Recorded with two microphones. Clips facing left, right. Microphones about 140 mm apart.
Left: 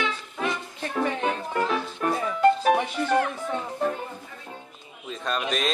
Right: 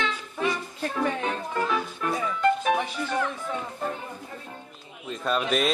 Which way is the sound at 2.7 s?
60° left (ahead or behind).